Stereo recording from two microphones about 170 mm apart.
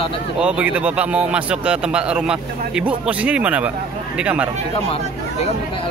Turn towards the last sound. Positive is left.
turn(degrees=-5)  # may be behind; listen again after turning